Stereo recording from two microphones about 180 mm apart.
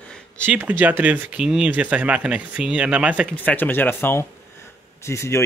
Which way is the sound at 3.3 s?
10° left (ahead or behind).